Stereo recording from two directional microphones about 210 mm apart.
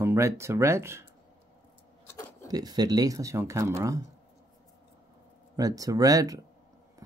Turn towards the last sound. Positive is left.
turn(degrees=-15)  # may be behind; listen again after turning